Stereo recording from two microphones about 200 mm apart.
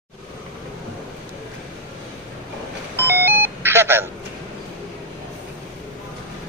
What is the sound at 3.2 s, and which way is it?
Telephone dialing, 10° right (ahead or behind).